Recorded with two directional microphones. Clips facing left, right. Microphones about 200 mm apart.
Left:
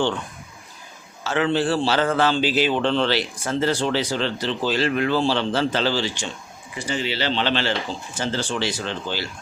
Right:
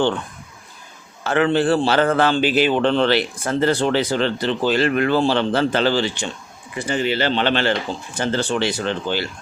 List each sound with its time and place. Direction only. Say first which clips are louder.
1.2 s a man's voice: right 4 dB; 55° right (ahead or behind)